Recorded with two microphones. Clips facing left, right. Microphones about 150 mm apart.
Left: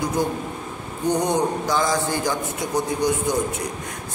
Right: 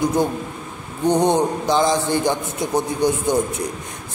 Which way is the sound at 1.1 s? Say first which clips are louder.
Right 4 dB; 25° right (ahead or behind).